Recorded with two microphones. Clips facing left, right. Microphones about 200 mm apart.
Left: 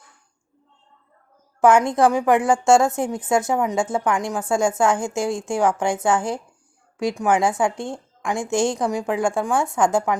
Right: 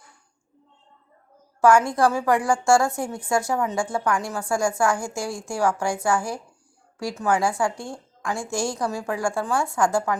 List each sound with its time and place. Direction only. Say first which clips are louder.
1.6 s a woman's voice: left 2 dB; 20° left (ahead or behind)